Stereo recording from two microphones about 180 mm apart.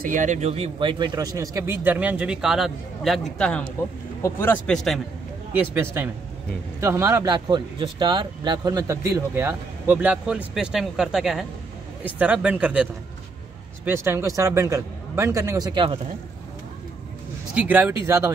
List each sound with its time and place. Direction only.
0.0 s a man's voice: 45° right (ahead or behind); by 5.0 s centre (ahead or behind)
5.5 s speech: 10° right (ahead or behind)
13.8 s speech: 15° right (ahead or behind)
17.6 s speech: 10° right (ahead or behind)